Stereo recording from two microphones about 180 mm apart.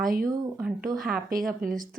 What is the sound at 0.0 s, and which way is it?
Speech, 50° right (ahead or behind).